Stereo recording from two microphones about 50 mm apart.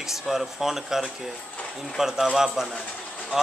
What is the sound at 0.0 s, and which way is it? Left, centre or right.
Speech, centre.